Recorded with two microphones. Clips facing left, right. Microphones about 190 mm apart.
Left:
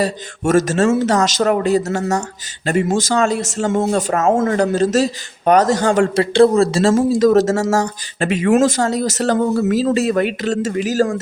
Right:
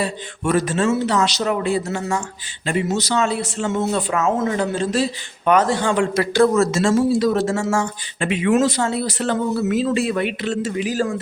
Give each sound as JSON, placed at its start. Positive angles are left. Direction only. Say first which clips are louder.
{"t": 0.0, "sound": "speech", "louder": "left 4 dB", "side_deg": 45}
{"t": 6.3, "sound": "speech", "louder": "left 4 dB", "side_deg": 30}
{"t": 6.9, "sound": "speech", "louder": "left 5 dB", "side_deg": 45}